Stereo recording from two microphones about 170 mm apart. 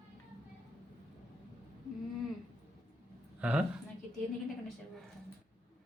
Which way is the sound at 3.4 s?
10° right (ahead or behind).